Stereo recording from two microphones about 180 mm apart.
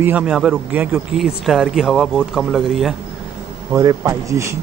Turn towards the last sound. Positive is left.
turn(degrees=-15)  # may be behind; listen again after turning